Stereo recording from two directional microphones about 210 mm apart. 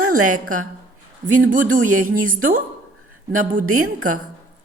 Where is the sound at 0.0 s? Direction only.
90° right.